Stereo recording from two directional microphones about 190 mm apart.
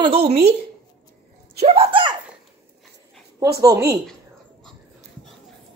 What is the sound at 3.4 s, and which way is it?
Speech, 15° right (ahead or behind).